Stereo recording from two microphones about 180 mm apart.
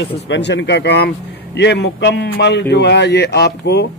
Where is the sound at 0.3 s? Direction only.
75° left (ahead or behind).